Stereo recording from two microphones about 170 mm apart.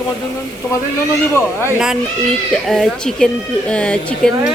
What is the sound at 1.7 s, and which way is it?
Speech, 5° right (ahead or behind).